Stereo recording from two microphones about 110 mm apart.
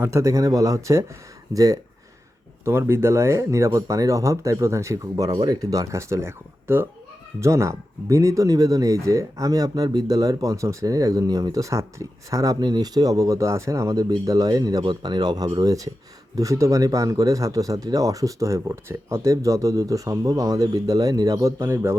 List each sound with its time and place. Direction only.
0.0 s speech: 25° right (ahead or behind)